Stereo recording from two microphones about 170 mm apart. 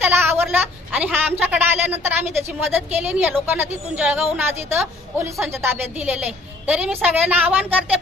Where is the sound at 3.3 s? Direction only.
10° right (ahead or behind).